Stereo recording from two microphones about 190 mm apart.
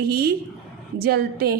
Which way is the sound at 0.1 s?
55° right (ahead or behind).